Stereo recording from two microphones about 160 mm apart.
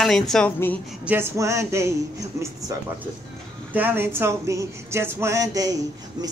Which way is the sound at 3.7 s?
10° right (ahead or behind).